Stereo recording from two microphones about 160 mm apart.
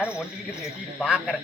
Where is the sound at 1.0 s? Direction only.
10° right (ahead or behind).